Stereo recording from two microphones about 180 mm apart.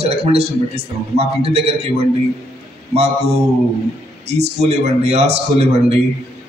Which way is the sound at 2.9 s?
35° right (ahead or behind).